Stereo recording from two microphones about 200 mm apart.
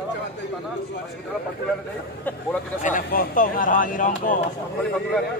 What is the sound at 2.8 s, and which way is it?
Speech, 40° left (ahead or behind).